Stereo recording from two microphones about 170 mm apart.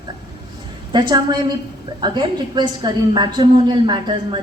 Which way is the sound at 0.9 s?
25° right (ahead or behind).